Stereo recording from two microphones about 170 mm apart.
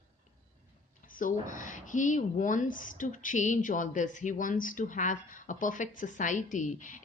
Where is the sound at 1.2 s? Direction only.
50° left (ahead or behind).